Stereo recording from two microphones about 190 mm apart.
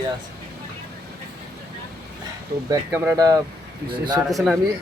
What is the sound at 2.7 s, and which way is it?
Speech, 10° right (ahead or behind).